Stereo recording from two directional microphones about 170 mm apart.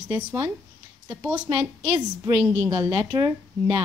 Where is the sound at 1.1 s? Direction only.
10° right (ahead or behind).